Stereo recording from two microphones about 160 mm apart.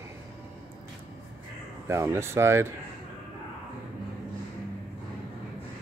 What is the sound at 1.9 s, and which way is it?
Speech, 15° right (ahead or behind).